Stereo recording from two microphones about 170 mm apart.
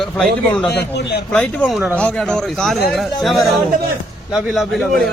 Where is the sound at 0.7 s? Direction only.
75° left (ahead or behind).